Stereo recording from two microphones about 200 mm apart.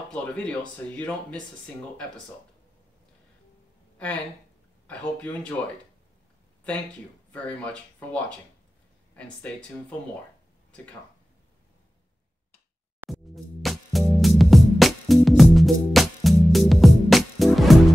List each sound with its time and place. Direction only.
0.1 s speech: 5° left (ahead or behind)
4.8 s speech: 5° left (ahead or behind)
7.4 s speech: 5° left (ahead or behind)
13.0 s music: centre (ahead or behind)